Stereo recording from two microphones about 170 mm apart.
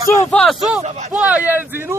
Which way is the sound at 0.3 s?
5° left (ahead or behind).